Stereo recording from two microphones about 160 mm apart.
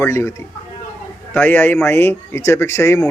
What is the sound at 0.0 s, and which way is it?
A man's voice, 15° left (ahead or behind).